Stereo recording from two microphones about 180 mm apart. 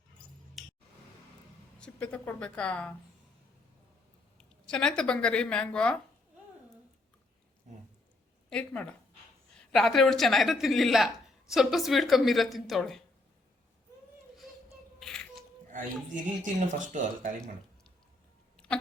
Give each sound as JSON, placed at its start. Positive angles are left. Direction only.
{"t": 0.6, "sound": "a sound", "side_deg": 0}
{"t": 1.8, "sound": "speech", "side_deg": 5}
{"t": 4.7, "sound": "a woman's voice", "side_deg": 5}
{"t": 8.4, "sound": "a woman's voice", "side_deg": 5}
{"t": 14.9, "sound": "music", "side_deg": 5}
{"t": 16.4, "sound": "speech", "side_deg": -45}
{"t": 18.5, "sound": "cat", "side_deg": 5}